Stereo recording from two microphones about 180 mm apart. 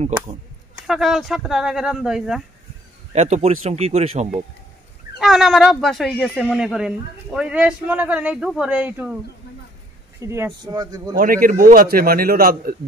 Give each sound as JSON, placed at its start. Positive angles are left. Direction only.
{"t": 0.8, "sound": "speech", "side_deg": 0}
{"t": 3.1, "sound": "speech", "side_deg": -40}
{"t": 5.2, "sound": "speech", "side_deg": 0}
{"t": 10.2, "sound": "speech", "side_deg": -15}
{"t": 11.1, "sound": "a man's voice", "side_deg": -50}